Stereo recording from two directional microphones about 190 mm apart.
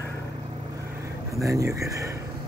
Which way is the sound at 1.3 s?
15° right (ahead or behind).